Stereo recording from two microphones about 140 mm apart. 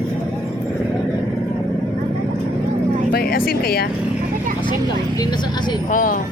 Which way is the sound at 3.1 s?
90° left.